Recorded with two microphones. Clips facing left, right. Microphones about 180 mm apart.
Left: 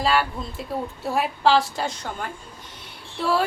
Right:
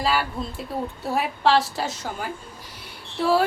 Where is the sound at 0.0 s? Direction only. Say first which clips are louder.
Left 2 dB; centre (ahead or behind).